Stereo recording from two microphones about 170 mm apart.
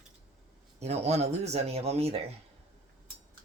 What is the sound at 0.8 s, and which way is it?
Speech, 40° right (ahead or behind).